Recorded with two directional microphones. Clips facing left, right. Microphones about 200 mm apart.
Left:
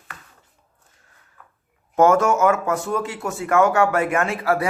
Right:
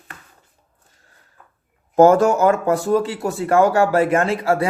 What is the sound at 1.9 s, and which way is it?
Speech, 35° right (ahead or behind).